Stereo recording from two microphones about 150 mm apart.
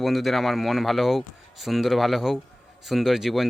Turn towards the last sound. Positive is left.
turn(degrees=0)  # may be behind; listen again after turning